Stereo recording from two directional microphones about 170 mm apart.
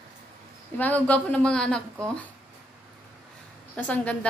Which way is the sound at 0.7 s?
10° left (ahead or behind).